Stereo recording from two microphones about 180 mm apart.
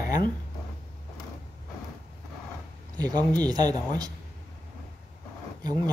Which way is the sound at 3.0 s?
20° right (ahead or behind).